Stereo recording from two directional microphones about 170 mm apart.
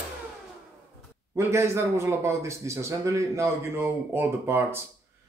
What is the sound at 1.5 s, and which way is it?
Speech, 15° right (ahead or behind).